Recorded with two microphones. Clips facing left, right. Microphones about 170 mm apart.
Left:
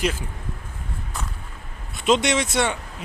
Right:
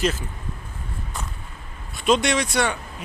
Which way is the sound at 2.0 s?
20° left (ahead or behind).